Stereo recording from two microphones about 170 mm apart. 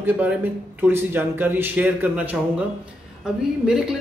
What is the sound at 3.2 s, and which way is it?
Mantra, 5° right (ahead or behind).